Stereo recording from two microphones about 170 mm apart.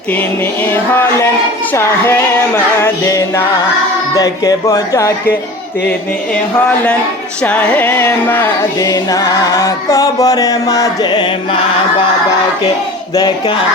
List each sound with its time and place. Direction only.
1.7 s music: 15° left (ahead or behind)
7.4 s music: 10° left (ahead or behind); by 11.3 s 25° left (ahead or behind)
13.1 s music: 25° left (ahead or behind)